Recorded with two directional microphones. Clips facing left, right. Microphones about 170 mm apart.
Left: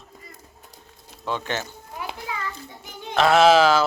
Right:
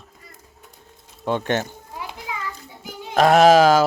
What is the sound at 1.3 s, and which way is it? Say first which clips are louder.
Speech: right 6 dB; 50° right (ahead or behind).